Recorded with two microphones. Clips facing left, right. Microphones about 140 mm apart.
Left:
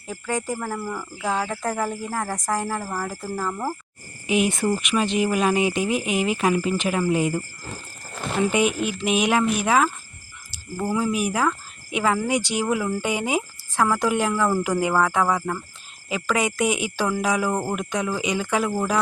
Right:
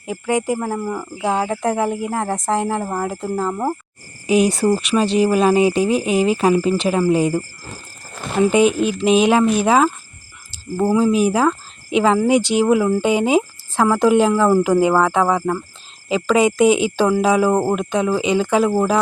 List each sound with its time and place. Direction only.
0.0 s speech: 20° right (ahead or behind)
4.3 s speech: 35° right (ahead or behind)
10.9 s speech: 25° right (ahead or behind)